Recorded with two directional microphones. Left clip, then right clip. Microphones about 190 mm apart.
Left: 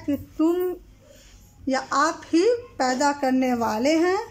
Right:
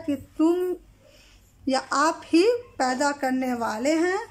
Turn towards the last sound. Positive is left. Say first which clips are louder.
# left 2 dB
turn(degrees=5)  # may be behind; listen again after turning